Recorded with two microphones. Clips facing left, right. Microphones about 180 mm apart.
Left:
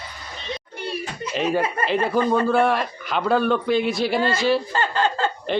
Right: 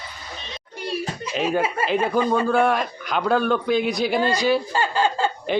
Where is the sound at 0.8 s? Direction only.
10° right (ahead or behind).